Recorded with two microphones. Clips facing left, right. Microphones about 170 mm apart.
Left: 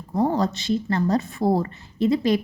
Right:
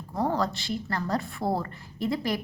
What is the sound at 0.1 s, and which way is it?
A woman's voice, 20° left (ahead or behind).